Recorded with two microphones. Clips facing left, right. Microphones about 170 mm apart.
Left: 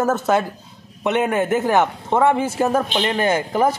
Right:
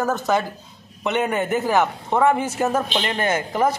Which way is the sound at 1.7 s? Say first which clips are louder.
Left 2 dB; 20° left (ahead or behind).